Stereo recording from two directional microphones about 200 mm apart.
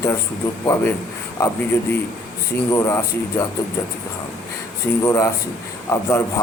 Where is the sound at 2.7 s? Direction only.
15° left (ahead or behind).